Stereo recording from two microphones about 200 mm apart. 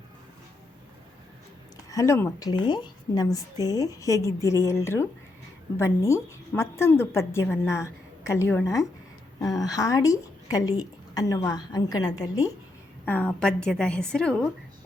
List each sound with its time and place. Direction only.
1.9 s a woman's voice: 15° left (ahead or behind)